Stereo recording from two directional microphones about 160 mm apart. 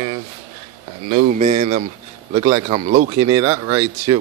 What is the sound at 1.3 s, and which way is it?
Speech, 50° right (ahead or behind).